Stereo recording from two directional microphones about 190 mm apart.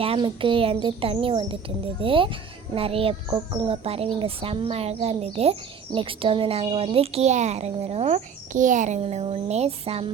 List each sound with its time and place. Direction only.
0.0 s speech: 30° right (ahead or behind)